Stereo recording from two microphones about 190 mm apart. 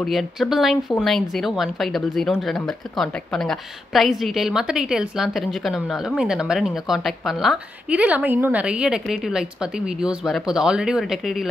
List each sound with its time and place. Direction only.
0.0 s speech: centre (ahead or behind)